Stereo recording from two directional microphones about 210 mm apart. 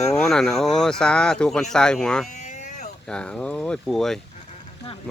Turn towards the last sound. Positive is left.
turn(degrees=0)  # may be behind; listen again after turning